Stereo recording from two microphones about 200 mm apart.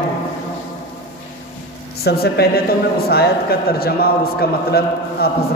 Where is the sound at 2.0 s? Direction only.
50° left (ahead or behind).